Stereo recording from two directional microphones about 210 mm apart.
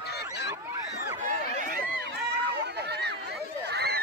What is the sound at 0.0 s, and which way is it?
Goose, 50° left (ahead or behind).